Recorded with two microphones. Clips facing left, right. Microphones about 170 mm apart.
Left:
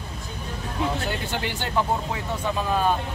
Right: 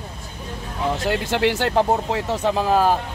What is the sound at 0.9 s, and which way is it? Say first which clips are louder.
Speech: right 6 dB; 90° right.